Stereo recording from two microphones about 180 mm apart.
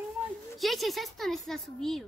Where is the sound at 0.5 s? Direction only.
Centre (ahead or behind).